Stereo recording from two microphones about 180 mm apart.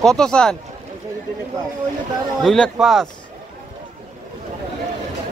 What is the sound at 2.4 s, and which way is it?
Speech, centre (ahead or behind).